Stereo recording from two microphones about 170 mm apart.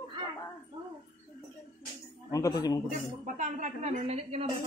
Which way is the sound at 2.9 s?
50° right (ahead or behind).